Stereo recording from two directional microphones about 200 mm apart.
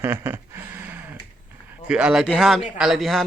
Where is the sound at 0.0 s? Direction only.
10° right (ahead or behind).